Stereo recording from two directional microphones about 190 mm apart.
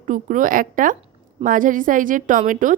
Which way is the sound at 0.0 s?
45° right (ahead or behind).